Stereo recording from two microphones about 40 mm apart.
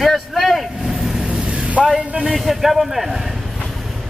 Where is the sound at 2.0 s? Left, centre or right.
Right.